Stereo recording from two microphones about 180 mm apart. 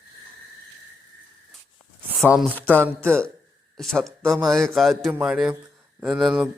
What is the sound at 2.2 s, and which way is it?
Speech, 5° right (ahead or behind).